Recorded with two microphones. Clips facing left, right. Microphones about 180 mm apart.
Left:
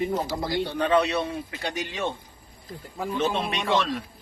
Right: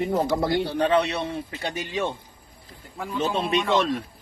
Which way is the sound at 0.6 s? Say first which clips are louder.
Right 1 dB; 35° right (ahead or behind).